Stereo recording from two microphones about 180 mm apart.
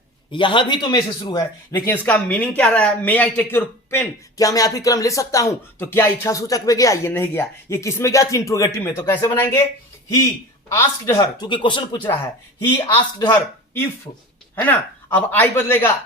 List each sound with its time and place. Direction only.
0.3 s speech: 25° left (ahead or behind)
1.7 s a woman's voice: 10° left (ahead or behind)
10.7 s speech: 15° left (ahead or behind)
14.5 s a woman's voice: 10° left (ahead or behind)